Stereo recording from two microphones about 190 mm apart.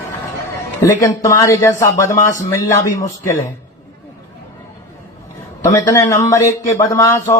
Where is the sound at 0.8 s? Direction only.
15° left (ahead or behind).